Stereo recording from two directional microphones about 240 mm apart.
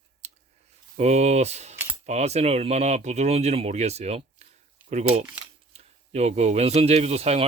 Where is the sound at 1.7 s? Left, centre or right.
Centre.